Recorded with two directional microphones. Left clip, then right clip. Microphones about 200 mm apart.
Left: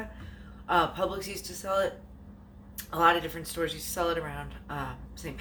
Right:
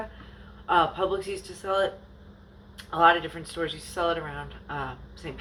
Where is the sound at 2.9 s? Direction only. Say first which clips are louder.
Right 4 dB; 10° left (ahead or behind).